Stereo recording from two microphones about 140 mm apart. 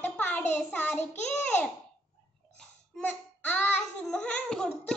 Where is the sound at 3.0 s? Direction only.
10° left (ahead or behind).